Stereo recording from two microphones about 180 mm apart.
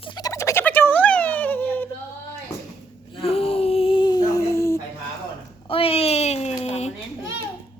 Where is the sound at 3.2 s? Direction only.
35° left (ahead or behind); by 4.8 s 15° left (ahead or behind).